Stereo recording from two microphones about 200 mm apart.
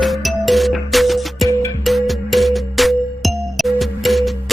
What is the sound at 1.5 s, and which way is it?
Music, 15° left (ahead or behind).